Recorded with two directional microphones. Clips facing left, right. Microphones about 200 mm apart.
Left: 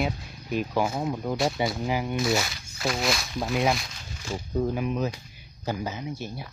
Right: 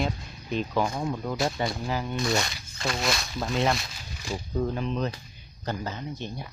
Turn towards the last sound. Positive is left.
turn(degrees=10)  # may be behind; listen again after turning